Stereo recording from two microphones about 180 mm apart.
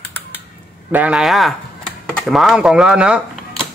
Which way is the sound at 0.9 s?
5° right (ahead or behind).